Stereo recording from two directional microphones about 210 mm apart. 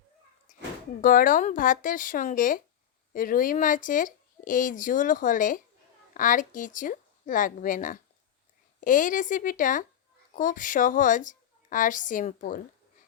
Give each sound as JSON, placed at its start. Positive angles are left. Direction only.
{"t": 1.0, "sound": "speech", "side_deg": 40}